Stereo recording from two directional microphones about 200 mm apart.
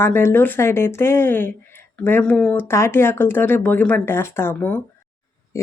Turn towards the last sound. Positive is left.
turn(degrees=10)  # may be behind; listen again after turning